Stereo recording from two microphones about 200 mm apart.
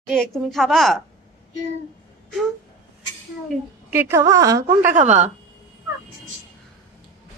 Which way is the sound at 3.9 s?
10° right (ahead or behind).